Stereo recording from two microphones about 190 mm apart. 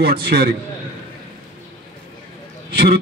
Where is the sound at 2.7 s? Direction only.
55° right (ahead or behind).